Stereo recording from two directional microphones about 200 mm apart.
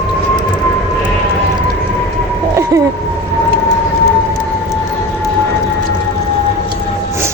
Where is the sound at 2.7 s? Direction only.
15° right (ahead or behind).